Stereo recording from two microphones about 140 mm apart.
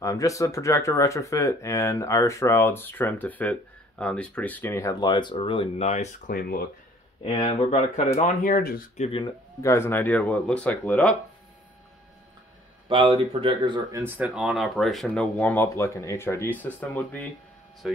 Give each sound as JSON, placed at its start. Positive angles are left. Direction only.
{"t": 0.0, "sound": "speech", "side_deg": 25}
{"t": 5.9, "sound": "speech", "side_deg": 55}
{"t": 7.2, "sound": "speech", "side_deg": 50}
{"t": 9.0, "sound": "speech", "side_deg": 40}
{"t": 9.6, "sound": "speech", "side_deg": 20}
{"t": 12.8, "sound": "speech", "side_deg": -40}
{"t": 14.0, "sound": "speech", "side_deg": -10}
{"t": 15.3, "sound": "speech", "side_deg": 10}
{"t": 17.8, "sound": "speech", "side_deg": -5}